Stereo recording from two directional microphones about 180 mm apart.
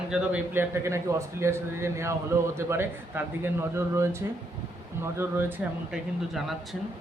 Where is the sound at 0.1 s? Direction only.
10° right (ahead or behind).